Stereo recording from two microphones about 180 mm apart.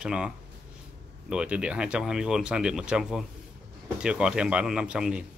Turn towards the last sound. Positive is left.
turn(degrees=-5)  # may be behind; listen again after turning